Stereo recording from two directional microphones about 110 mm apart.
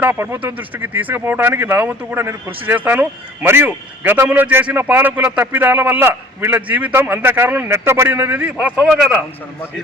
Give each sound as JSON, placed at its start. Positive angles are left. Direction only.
{"t": 0.0, "sound": "a man's voice", "side_deg": -20}